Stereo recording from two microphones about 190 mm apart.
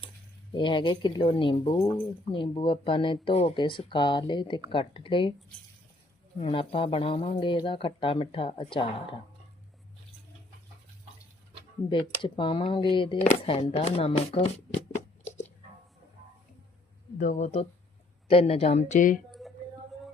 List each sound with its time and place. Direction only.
0.5 s speech: 25° left (ahead or behind)
6.4 s speech: 30° left (ahead or behind)
11.9 s speech: 25° left (ahead or behind)
17.2 s speech: 40° left (ahead or behind)
19.3 s a sound: centre (ahead or behind)